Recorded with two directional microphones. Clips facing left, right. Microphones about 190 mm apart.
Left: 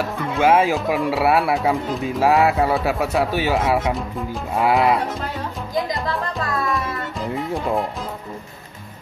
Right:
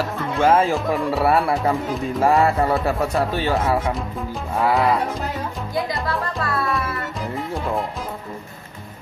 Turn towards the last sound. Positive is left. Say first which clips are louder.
# left 2 dB
turn(degrees=0)  # may be behind; listen again after turning